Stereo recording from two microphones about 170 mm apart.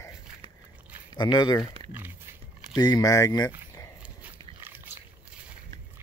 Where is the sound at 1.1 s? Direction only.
25° left (ahead or behind).